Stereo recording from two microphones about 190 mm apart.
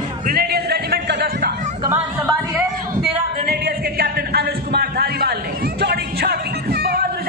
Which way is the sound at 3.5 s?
50° right (ahead or behind).